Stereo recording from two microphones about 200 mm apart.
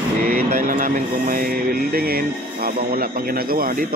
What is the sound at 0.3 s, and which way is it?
Speech, 45° right (ahead or behind).